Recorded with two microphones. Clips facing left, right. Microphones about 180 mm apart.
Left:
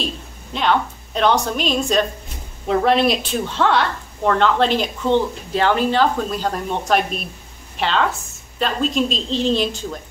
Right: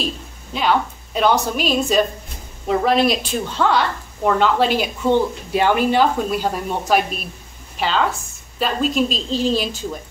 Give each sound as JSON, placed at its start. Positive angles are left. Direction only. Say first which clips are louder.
{"t": 0.5, "sound": "a woman's voice", "louder": "even", "side_deg": -5}